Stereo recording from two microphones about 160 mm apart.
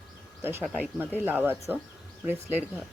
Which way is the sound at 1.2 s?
10° right (ahead or behind).